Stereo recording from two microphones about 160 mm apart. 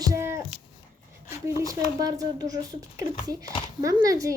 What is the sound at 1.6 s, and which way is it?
Speech, 20° right (ahead or behind).